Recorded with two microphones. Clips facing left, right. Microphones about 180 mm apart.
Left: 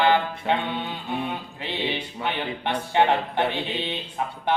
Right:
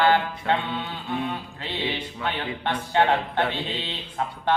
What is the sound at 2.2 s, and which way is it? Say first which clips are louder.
Music: even; 15° left (ahead or behind).